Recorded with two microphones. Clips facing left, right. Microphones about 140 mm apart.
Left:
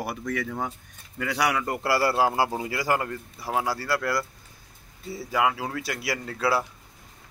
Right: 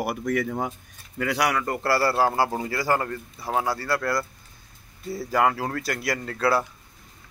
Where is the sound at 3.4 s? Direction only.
20° right (ahead or behind).